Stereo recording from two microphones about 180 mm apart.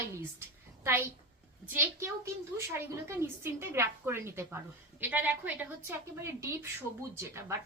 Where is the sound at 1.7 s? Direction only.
15° right (ahead or behind).